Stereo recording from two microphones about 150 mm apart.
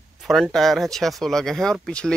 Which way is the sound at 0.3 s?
Centre (ahead or behind).